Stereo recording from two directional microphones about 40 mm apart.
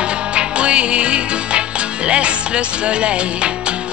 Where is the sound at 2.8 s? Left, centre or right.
Right.